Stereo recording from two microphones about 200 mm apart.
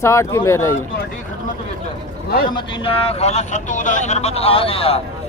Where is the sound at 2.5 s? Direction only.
25° left (ahead or behind).